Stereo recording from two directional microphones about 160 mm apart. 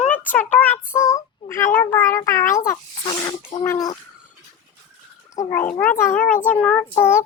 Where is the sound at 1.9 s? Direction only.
15° left (ahead or behind).